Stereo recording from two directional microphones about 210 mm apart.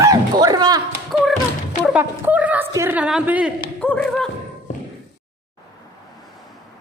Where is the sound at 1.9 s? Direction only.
10° right (ahead or behind).